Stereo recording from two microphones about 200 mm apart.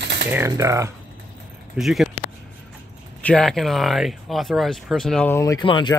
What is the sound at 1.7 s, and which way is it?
Speech, centre (ahead or behind).